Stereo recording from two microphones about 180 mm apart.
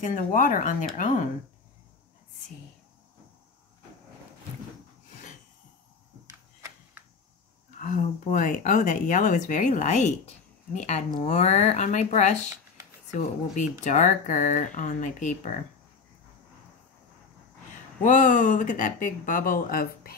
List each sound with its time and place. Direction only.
0.0 s speech: 45° left (ahead or behind)
7.8 s speech: 45° left (ahead or behind)
18.0 s speech: 45° left (ahead or behind)